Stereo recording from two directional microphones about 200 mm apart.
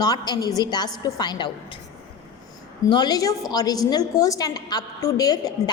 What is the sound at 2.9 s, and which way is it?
A woman's voice, 20° left (ahead or behind).